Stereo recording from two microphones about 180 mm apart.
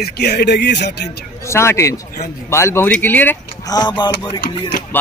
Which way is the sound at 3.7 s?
25° left (ahead or behind).